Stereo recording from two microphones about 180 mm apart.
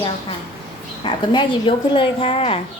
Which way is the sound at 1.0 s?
25° left (ahead or behind).